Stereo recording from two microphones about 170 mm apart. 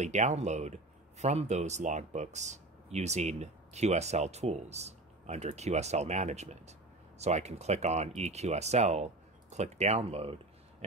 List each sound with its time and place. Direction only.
0.0 s speech: 45° right (ahead or behind)